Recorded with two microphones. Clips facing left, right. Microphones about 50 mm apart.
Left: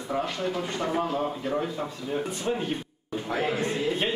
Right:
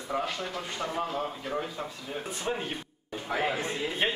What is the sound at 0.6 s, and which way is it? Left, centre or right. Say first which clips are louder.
A man's voice: left 5 dB; centre.